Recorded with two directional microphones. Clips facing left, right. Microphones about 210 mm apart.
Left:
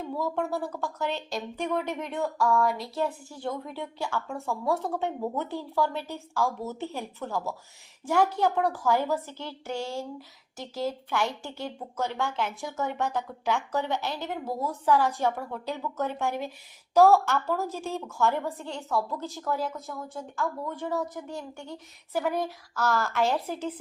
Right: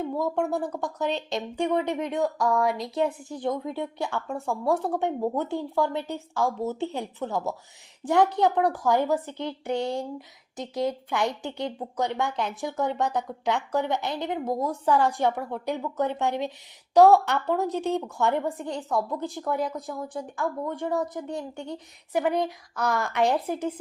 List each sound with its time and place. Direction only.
0.1 s a woman's voice: 20° right (ahead or behind)